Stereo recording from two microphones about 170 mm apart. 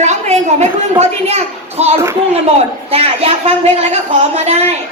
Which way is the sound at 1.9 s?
15° right (ahead or behind).